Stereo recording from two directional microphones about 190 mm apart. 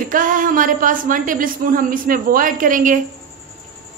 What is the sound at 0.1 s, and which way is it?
A woman's voice, 45° right (ahead or behind).